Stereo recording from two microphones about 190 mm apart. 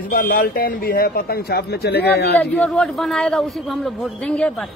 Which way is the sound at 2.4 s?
5° left (ahead or behind).